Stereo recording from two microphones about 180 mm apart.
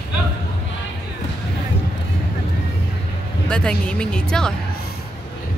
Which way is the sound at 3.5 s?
5° left (ahead or behind).